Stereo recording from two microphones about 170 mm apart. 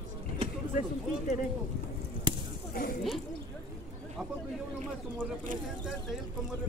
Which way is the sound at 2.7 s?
55° left (ahead or behind).